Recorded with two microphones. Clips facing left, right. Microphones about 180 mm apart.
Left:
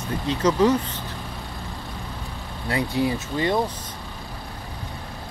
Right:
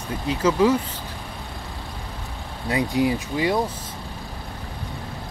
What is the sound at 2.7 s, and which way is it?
Speech, 15° right (ahead or behind).